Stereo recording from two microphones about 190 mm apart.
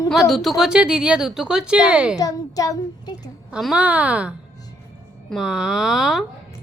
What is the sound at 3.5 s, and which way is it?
A woman's voice, 5° right (ahead or behind).